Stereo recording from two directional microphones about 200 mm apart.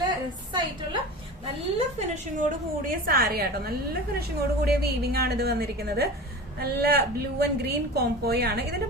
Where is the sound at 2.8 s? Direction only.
45° right (ahead or behind).